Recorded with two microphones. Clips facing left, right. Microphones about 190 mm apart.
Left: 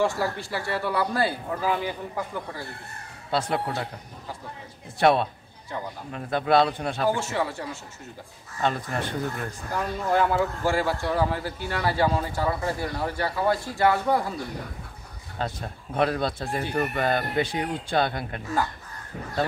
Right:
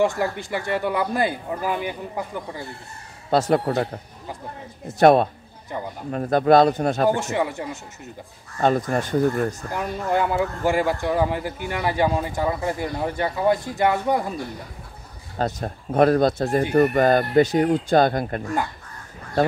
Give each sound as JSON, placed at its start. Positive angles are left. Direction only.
{"t": 0.0, "sound": "speech", "side_deg": -20}
{"t": 3.3, "sound": "speech", "side_deg": -45}
{"t": 7.2, "sound": "speech", "side_deg": -15}
{"t": 8.5, "sound": "speech", "side_deg": -45}
{"t": 9.7, "sound": "speech", "side_deg": -15}
{"t": 15.3, "sound": "speech", "side_deg": -45}